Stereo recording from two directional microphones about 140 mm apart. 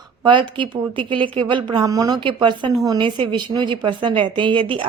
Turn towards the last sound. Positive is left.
turn(degrees=-35)  # may be behind; listen again after turning